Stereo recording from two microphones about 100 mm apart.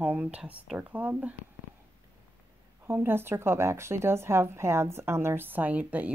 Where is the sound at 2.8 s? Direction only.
25° right (ahead or behind).